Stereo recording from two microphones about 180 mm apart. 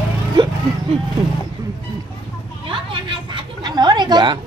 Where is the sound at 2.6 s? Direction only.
25° right (ahead or behind).